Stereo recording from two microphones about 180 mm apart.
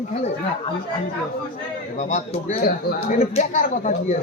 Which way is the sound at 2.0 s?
45° left (ahead or behind).